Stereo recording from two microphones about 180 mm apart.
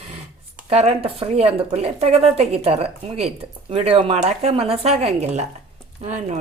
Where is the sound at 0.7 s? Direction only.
35° right (ahead or behind).